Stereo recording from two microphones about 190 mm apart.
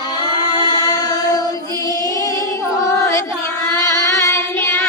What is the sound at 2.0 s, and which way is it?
Female singing, 20° left (ahead or behind).